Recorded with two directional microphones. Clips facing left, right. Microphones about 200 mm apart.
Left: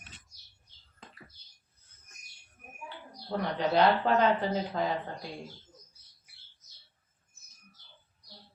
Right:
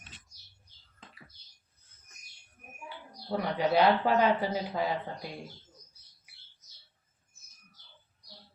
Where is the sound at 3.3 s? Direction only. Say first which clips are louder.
Right 1 dB; 10° right (ahead or behind).